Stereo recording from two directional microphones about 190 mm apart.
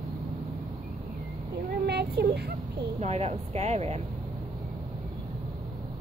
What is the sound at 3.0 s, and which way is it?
A woman's voice, 35° right (ahead or behind).